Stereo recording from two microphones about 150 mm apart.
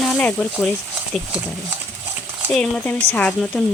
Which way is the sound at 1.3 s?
5° right (ahead or behind).